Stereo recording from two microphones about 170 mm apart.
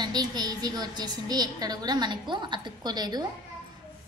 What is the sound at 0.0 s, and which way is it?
A woman's voice, 25° right (ahead or behind).